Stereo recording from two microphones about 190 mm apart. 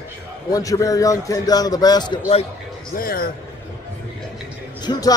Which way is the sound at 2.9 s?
50° left (ahead or behind).